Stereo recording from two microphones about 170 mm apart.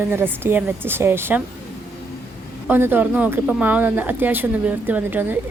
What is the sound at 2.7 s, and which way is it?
A woman's voice, 10° right (ahead or behind).